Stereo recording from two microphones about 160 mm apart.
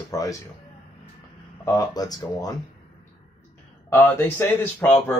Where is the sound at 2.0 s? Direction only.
25° left (ahead or behind).